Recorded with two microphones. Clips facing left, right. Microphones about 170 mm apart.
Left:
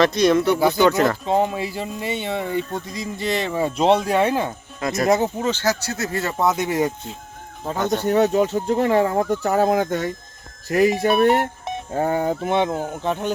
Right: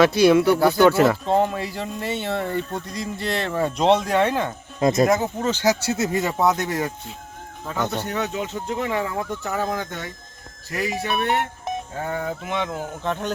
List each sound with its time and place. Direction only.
0.0 s speech: 5° right (ahead or behind)
1.3 s speech: 10° left (ahead or behind)
4.8 s speech: 25° right (ahead or behind)
5.0 s speech: 25° left (ahead or behind)
5.5 s speech: 10° right (ahead or behind)
5.8 s speech: 25° right (ahead or behind)
6.3 s speech: centre (ahead or behind)
6.6 s speech: 15° left (ahead or behind)
7.6 s speech: 35° left (ahead or behind)
12.6 s speech: 20° left (ahead or behind)